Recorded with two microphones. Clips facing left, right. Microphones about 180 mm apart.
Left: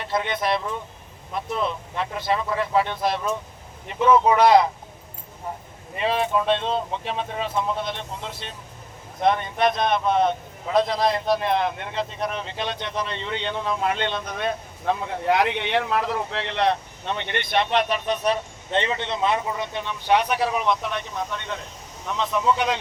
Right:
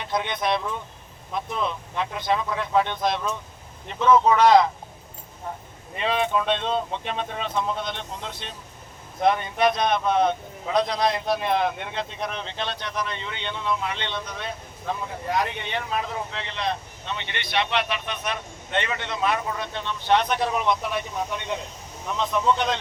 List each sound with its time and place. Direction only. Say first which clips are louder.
0.0 s speech: left 1 dB; 5° left (ahead or behind)
6.0 s speech: left 1 dB; 5° left (ahead or behind); by 21.6 s 15° right (ahead or behind)
22.0 s speech: even; centre (ahead or behind)